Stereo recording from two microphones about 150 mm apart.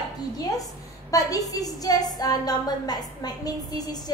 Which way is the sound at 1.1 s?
25° left (ahead or behind).